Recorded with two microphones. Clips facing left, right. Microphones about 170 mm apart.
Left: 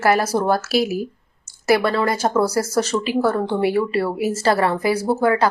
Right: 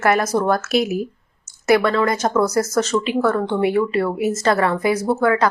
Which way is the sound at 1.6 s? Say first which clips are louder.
Right 1 dB; 30° left (ahead or behind).